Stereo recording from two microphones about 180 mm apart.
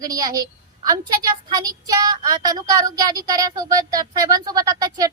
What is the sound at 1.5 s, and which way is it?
A woman's voice, 20° right (ahead or behind).